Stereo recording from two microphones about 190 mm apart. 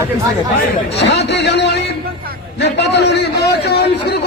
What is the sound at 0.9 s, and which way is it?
A man's voice, 65° left (ahead or behind).